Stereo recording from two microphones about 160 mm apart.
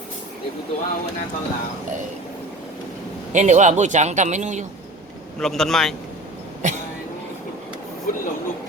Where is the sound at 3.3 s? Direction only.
50° right (ahead or behind).